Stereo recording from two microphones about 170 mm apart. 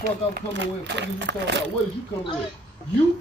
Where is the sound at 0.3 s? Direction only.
85° right.